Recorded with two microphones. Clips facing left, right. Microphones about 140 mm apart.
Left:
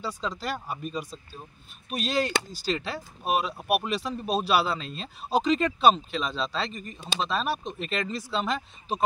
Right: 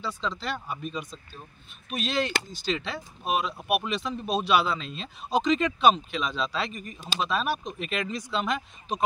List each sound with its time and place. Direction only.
0.0 s speech: 10° left (ahead or behind)
0.4 s speech: 40° left (ahead or behind)
2.7 s speech: 5° left (ahead or behind)